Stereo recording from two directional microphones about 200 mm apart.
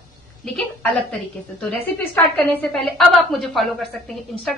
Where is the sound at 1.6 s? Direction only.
5° left (ahead or behind).